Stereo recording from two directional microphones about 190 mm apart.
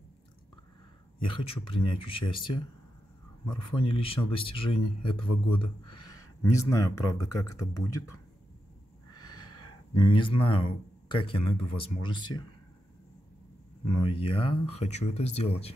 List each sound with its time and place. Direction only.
1.2 s speech: 30° left (ahead or behind)
3.4 s speech: 25° left (ahead or behind)
9.1 s snort: 20° left (ahead or behind)
9.9 s speech: 25° left (ahead or behind)
13.9 s speech: 25° left (ahead or behind)